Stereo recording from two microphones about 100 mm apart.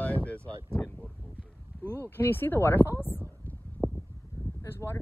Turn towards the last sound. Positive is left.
turn(degrees=25)  # may be behind; listen again after turning